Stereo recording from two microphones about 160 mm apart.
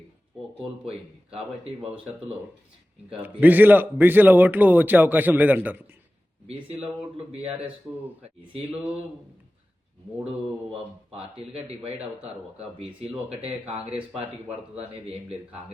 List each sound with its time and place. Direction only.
3.1 s a man's voice: 10° right (ahead or behind)
12.8 s speech: 40° right (ahead or behind)